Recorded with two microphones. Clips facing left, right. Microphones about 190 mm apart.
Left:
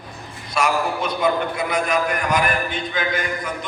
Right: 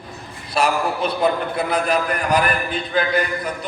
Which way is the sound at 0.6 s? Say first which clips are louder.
Right 1 dB; 35° right (ahead or behind).